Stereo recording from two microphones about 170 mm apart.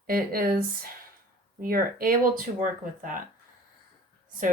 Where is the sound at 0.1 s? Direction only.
60° right (ahead or behind).